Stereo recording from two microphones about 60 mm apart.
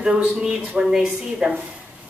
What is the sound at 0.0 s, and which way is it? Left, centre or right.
A woman's voice, centre.